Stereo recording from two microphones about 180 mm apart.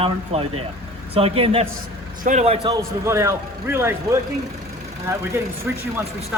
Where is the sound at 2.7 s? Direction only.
15° right (ahead or behind).